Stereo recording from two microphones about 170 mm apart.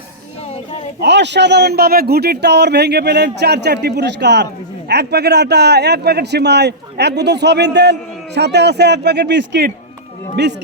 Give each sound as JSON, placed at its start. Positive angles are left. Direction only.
{"t": 1.0, "sound": "a man's voice", "side_deg": -90}
{"t": 4.9, "sound": "a man's voice", "side_deg": -75}